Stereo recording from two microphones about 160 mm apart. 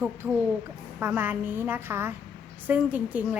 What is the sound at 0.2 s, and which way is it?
Speech, 15° right (ahead or behind).